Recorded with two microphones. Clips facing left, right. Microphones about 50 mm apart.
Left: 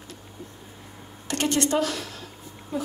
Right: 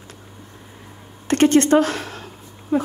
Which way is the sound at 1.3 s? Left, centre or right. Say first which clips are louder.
Right 10 dB; right.